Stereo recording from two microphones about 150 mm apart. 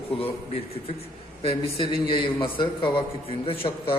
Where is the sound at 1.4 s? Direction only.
40° left (ahead or behind).